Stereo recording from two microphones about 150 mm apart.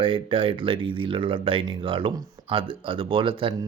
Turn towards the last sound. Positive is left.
turn(degrees=-35)  # may be behind; listen again after turning